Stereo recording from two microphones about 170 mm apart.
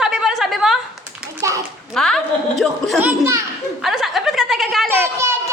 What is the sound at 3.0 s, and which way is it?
Speech, 15° right (ahead or behind).